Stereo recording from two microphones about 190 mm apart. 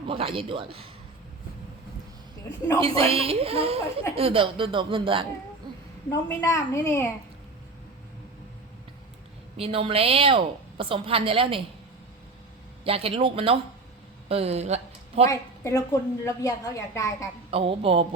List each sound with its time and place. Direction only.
0.1 s a woman's voice: 30° right (ahead or behind)
2.8 s a woman's voice: 30° right (ahead or behind)
6.1 s a woman's voice: 15° left (ahead or behind)
9.6 s a woman's voice: 30° right (ahead or behind)
12.8 s a woman's voice: 30° right (ahead or behind)
15.3 s a woman's voice: 15° left (ahead or behind)
17.5 s a woman's voice: 30° right (ahead or behind)